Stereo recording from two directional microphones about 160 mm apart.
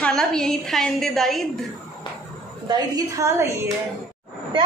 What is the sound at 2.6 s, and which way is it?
A woman's voice, 25° right (ahead or behind).